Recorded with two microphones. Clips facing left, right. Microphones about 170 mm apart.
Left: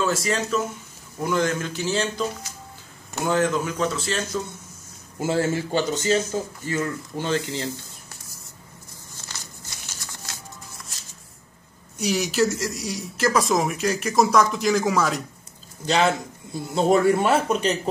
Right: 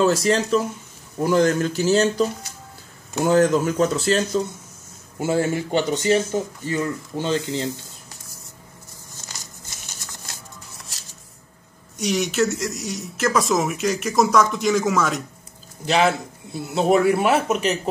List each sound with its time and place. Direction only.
0.0 s speech: 35° right (ahead or behind)
3.3 s speech: 40° right (ahead or behind)
5.2 s speech: 15° right (ahead or behind)
12.0 s speech: centre (ahead or behind)